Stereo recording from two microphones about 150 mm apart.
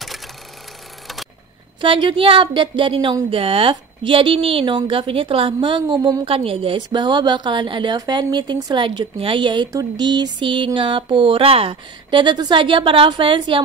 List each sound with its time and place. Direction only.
1.8 s a woman's voice: 35° right (ahead or behind)